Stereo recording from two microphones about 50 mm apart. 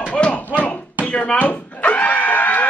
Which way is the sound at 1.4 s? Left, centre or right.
Left.